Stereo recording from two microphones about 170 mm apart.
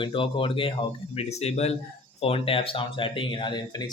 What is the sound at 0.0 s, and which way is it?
Speech, 30° left (ahead or behind).